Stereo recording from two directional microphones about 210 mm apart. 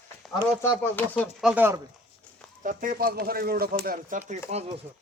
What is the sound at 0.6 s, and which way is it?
Speech, 10° left (ahead or behind).